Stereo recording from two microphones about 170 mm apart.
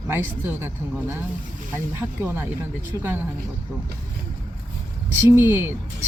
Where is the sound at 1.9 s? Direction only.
15° right (ahead or behind).